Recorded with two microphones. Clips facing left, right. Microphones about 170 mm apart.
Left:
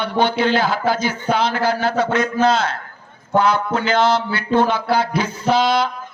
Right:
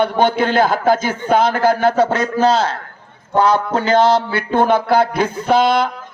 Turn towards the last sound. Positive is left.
turn(degrees=-55)  # may be behind; listen again after turning